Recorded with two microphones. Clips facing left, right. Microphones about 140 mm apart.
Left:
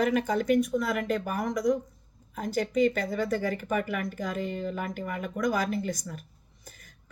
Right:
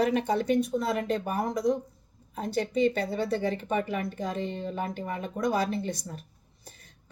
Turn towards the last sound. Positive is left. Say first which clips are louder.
# left 1 dB
turn(degrees=-30)  # may be behind; listen again after turning